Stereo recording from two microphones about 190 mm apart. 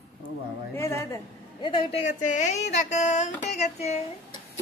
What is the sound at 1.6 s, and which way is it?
A woman's voice, 25° left (ahead or behind).